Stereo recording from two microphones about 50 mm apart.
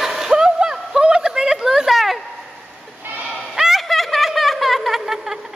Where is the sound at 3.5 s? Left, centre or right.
Centre.